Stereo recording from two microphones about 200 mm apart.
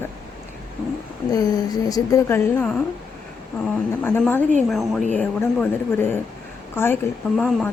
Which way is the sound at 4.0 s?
10° left (ahead or behind).